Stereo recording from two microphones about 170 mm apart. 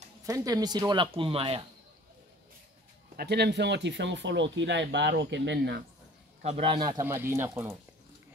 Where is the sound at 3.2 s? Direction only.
75° right (ahead or behind).